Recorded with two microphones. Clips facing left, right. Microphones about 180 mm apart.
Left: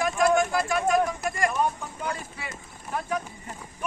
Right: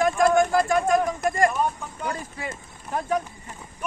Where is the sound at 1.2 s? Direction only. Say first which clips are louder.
Right 6 dB; 45° right (ahead or behind).